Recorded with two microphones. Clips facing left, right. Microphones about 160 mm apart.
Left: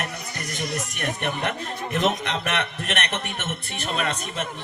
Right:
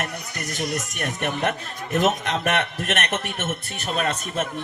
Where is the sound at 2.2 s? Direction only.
45° right (ahead or behind).